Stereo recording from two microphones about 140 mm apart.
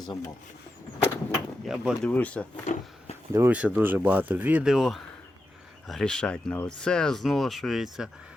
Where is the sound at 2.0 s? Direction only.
10° left (ahead or behind).